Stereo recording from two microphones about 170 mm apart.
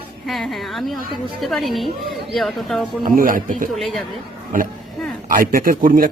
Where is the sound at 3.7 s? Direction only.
Centre (ahead or behind).